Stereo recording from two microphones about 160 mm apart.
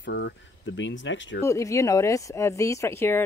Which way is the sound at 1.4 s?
20° left (ahead or behind).